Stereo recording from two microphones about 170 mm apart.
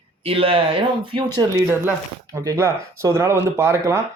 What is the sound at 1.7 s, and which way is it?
Speech, 15° right (ahead or behind).